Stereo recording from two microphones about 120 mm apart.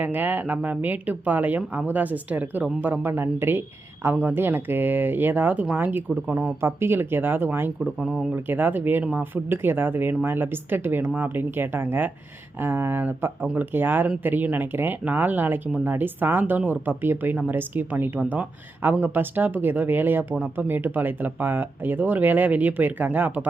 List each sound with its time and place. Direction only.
0.0 s speech: 15° right (ahead or behind)